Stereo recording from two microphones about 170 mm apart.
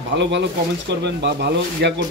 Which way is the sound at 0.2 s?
90° right.